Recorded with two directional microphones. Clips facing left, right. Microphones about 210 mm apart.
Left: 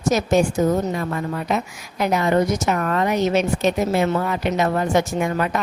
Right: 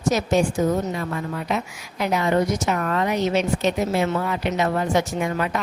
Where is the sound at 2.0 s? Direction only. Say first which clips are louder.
Left 2 dB; 45° left (ahead or behind).